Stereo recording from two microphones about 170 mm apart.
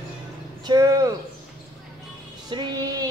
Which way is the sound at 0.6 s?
20° right (ahead or behind).